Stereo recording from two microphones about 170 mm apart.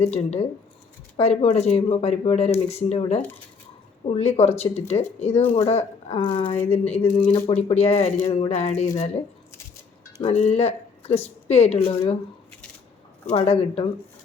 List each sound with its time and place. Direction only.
0.0 s speech: 40° left (ahead or behind)
7.2 s speech: 10° left (ahead or behind)
7.4 s speech: 40° left (ahead or behind)
10.2 s speech: 40° left (ahead or behind)
13.3 s speech: 35° left (ahead or behind)